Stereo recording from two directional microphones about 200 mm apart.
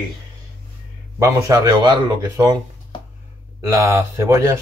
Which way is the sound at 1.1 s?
15° right (ahead or behind).